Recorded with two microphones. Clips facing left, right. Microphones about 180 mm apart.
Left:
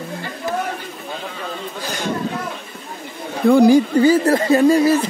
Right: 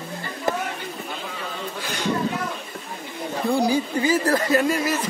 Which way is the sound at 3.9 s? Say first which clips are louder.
Left 7 dB; 30° left (ahead or behind).